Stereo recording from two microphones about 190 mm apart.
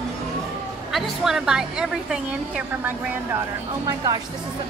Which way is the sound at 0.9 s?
Centre (ahead or behind).